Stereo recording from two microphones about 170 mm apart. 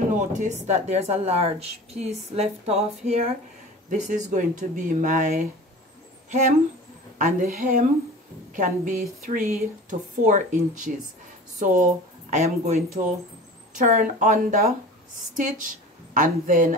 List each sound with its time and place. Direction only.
0.1 s speech: 50° right (ahead or behind)
7.2 s a woman's voice: 50° right (ahead or behind)